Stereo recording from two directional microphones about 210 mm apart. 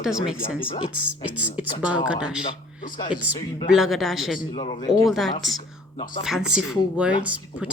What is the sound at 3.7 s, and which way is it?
Speech, centre (ahead or behind).